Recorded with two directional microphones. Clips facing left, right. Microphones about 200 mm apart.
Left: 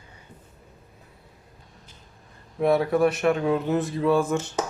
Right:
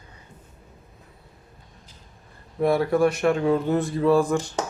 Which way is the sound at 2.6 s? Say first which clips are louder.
Even; centre (ahead or behind).